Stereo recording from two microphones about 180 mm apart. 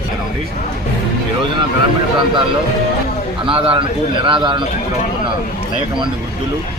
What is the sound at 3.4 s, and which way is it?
A man's voice, 30° right (ahead or behind).